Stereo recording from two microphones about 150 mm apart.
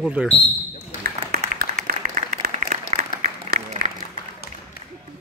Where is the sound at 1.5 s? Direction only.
70° right (ahead or behind).